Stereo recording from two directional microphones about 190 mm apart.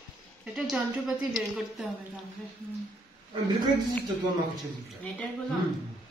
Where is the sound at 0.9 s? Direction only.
15° right (ahead or behind).